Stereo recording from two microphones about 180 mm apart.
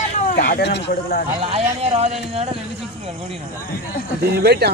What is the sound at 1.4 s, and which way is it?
Speech, 35° right (ahead or behind).